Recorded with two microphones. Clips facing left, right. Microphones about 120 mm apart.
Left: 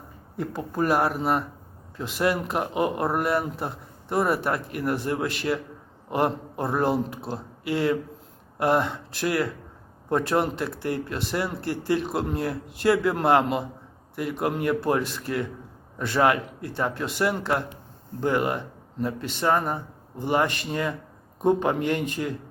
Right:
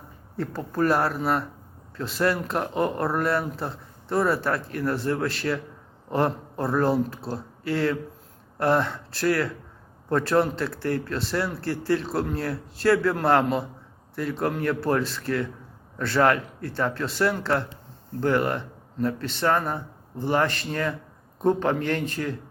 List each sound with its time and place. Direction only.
0.3 s speech: 15° left (ahead or behind)